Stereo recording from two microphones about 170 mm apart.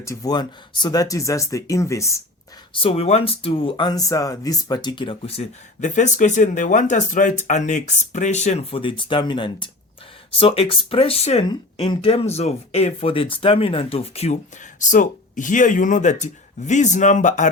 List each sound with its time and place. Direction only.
0.0 s speech: 20° left (ahead or behind)
2.7 s speech: 35° left (ahead or behind)